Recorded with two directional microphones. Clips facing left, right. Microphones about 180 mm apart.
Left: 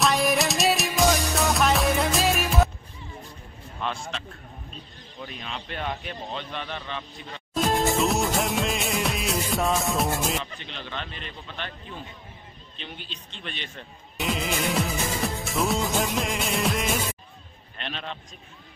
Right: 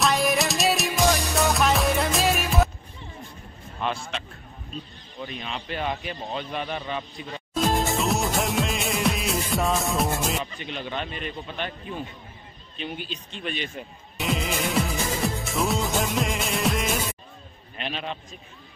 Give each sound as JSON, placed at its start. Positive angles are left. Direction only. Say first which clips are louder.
{"t": 0.0, "sound": "music", "louder": "even", "side_deg": 0}
{"t": 3.8, "sound": "a sound", "louder": "right 3 dB", "side_deg": -5}
{"t": 5.2, "sound": "a man's voice", "louder": "right 3 dB", "side_deg": 0}
{"t": 7.5, "sound": "music", "louder": "left 1 dB", "side_deg": 0}
{"t": 10.4, "sound": "a man's voice", "louder": "right 5 dB", "side_deg": -15}